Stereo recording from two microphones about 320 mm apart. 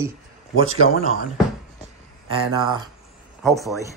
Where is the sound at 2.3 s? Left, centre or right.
Centre.